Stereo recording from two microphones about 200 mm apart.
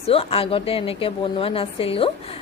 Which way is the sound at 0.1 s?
30° left (ahead or behind).